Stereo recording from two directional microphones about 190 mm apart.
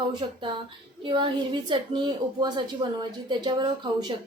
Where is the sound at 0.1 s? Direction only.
25° right (ahead or behind).